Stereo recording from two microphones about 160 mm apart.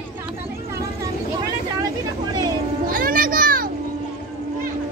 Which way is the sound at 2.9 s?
60° right (ahead or behind).